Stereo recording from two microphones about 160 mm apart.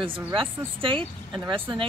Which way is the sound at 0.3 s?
35° right (ahead or behind).